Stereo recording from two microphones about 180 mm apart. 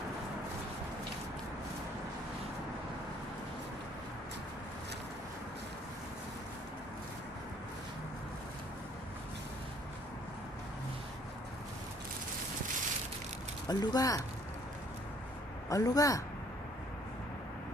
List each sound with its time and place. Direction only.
13.7 s speech: 20° left (ahead or behind)
15.7 s speech: 20° left (ahead or behind)